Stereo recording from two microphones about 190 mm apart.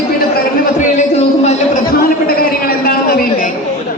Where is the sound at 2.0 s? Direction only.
50° left (ahead or behind).